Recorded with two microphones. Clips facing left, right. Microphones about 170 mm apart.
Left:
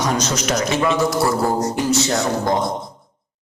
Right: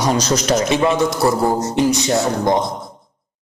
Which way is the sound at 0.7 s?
20° right (ahead or behind).